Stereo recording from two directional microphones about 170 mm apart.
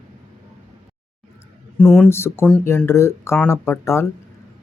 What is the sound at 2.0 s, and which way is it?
Speech, 15° left (ahead or behind).